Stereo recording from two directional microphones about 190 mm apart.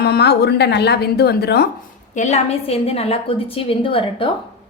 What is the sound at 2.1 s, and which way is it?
A woman's voice, 35° left (ahead or behind).